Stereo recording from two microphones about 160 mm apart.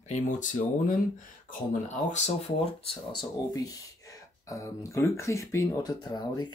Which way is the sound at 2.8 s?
25° left (ahead or behind).